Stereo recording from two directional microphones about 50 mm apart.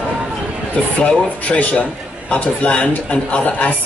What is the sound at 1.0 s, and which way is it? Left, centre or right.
Speech, left.